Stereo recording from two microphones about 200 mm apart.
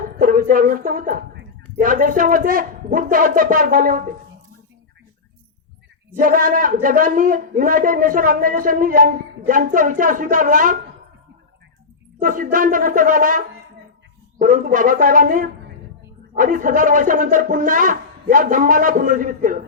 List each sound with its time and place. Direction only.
0.2 s a woman's voice: 40° right (ahead or behind)
6.1 s a man's voice: 45° right (ahead or behind)
12.2 s a man's voice: 40° right (ahead or behind)